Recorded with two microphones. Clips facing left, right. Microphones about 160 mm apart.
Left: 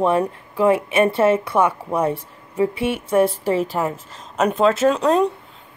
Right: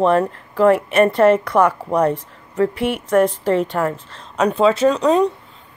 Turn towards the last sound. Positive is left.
turn(degrees=0)  # may be behind; listen again after turning